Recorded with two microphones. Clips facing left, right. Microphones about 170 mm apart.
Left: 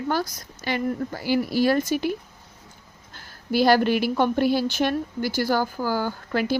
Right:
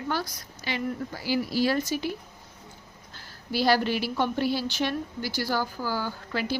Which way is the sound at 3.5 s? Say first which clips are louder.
Left 5 dB; 50° left (ahead or behind).